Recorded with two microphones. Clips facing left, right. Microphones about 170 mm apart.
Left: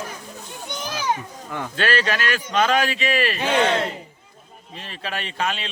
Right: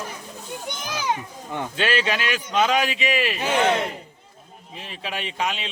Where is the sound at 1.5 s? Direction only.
20° right (ahead or behind).